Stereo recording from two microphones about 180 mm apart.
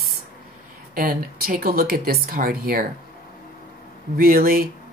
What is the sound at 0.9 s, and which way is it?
Speech, 55° right (ahead or behind).